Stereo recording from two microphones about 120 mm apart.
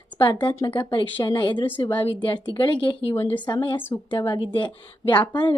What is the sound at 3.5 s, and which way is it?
A woman's voice, 45° left (ahead or behind).